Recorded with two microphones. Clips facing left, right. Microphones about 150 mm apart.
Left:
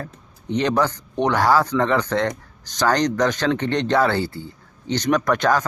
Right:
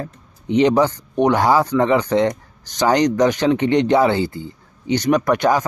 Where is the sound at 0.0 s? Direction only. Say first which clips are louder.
Right 4 dB; 15° right (ahead or behind).